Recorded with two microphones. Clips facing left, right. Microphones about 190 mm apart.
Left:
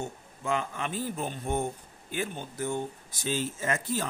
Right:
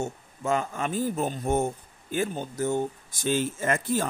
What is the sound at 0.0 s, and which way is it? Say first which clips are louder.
Speech: right 5 dB; 45° right (ahead or behind).